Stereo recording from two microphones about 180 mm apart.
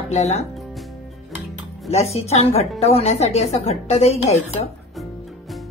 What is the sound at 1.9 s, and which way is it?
A woman's voice, 35° left (ahead or behind).